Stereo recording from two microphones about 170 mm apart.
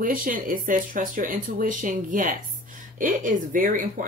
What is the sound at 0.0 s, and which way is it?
Speech, 55° right (ahead or behind).